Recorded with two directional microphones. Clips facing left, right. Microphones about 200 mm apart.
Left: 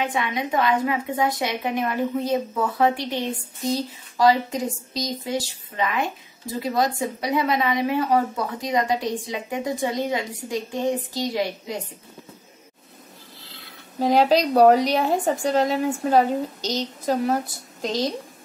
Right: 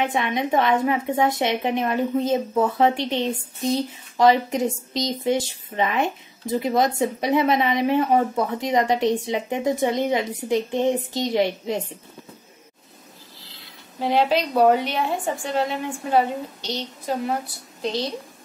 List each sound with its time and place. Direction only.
0.0 s speech: 25° right (ahead or behind)
13.9 s a woman's voice: 40° left (ahead or behind)